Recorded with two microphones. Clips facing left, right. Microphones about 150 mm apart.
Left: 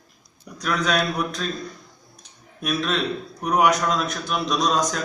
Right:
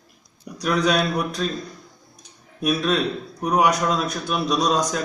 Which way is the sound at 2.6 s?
10° right (ahead or behind).